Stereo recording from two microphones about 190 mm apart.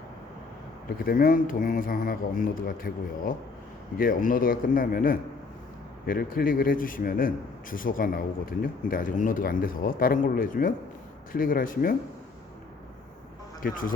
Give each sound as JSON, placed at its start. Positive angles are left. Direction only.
{"t": 0.9, "sound": "a man's voice", "side_deg": 50}
{"t": 13.6, "sound": "a man's voice", "side_deg": 45}